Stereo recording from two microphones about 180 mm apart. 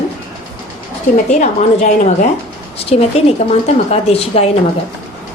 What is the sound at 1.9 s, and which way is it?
A woman's voice, 40° left (ahead or behind).